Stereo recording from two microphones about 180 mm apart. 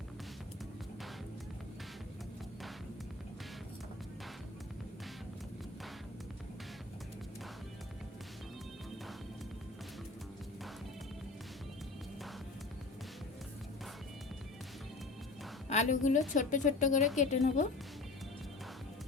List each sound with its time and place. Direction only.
15.7 s speech: 40° left (ahead or behind)